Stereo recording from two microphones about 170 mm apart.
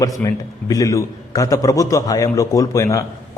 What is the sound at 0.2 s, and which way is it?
A man's voice, 20° left (ahead or behind).